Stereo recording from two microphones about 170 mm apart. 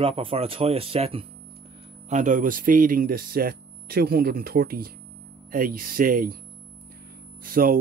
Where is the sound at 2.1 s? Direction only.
50° right (ahead or behind).